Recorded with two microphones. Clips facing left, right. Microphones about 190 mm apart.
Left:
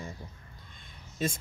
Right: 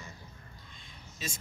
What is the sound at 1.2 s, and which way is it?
Speech, 55° left (ahead or behind).